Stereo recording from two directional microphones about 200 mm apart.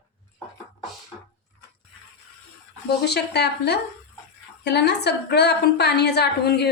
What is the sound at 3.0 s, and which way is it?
A woman's voice, 55° left (ahead or behind).